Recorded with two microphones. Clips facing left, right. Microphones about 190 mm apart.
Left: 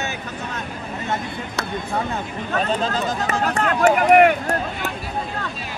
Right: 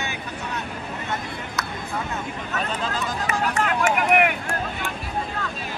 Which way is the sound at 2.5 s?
35° left (ahead or behind).